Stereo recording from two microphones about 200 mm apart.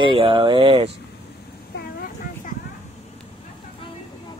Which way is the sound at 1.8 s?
50° left (ahead or behind).